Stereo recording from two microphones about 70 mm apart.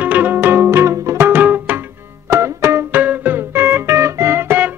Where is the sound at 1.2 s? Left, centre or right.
Right.